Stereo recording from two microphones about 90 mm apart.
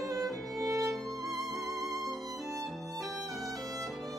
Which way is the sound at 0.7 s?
40° right (ahead or behind).